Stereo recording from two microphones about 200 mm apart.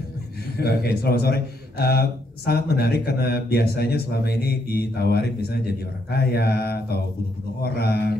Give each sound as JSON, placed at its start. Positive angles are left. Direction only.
{"t": 0.6, "sound": "speech", "side_deg": 50}